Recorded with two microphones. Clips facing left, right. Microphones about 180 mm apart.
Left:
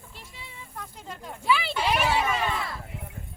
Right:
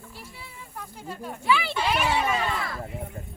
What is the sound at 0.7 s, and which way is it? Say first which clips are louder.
Snake: right 3 dB; 10° right (ahead or behind).